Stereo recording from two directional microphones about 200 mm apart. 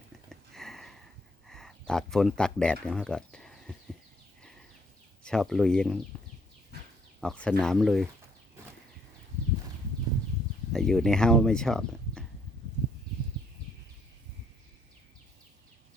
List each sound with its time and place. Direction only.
0.3 s a sound: centre (ahead or behind)
1.9 s speech: centre (ahead or behind)
5.2 s speech: 5° left (ahead or behind)
7.2 s speech: 5° left (ahead or behind)
10.7 s speech: centre (ahead or behind)